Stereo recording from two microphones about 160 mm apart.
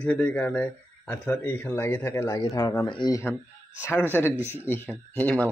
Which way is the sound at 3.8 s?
15° left (ahead or behind).